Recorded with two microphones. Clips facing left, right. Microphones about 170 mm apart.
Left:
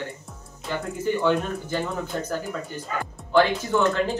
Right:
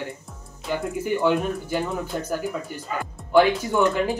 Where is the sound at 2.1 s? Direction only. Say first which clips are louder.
Even; 10° right (ahead or behind).